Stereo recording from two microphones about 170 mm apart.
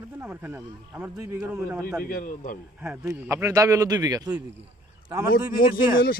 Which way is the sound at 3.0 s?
15° right (ahead or behind).